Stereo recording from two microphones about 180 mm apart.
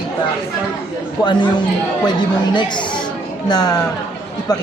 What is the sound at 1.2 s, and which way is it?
Speech, 25° left (ahead or behind).